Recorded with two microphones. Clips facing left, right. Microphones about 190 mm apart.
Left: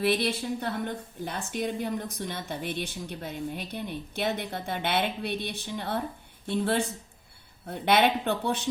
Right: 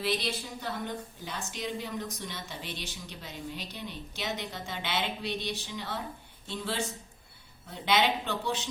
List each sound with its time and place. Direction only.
0.0 s a woman's voice: 60° left (ahead or behind)